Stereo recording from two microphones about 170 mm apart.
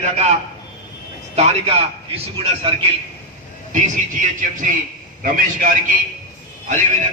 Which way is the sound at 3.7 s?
50° right (ahead or behind).